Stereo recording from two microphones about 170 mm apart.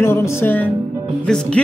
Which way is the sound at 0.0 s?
15° left (ahead or behind).